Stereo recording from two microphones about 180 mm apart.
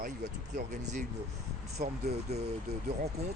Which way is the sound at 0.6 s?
40° right (ahead or behind).